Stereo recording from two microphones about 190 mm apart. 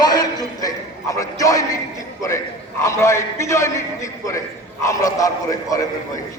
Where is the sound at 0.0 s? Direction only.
20° left (ahead or behind).